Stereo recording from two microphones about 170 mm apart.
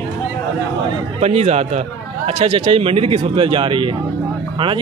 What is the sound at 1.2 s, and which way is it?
Speech, 40° right (ahead or behind).